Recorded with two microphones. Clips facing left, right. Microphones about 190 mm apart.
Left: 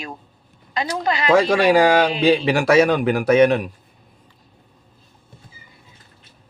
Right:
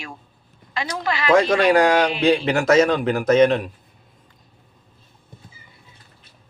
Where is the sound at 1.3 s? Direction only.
5° left (ahead or behind).